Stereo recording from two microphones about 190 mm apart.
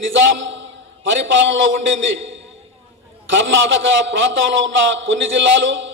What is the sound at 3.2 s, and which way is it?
A man's voice, 80° right.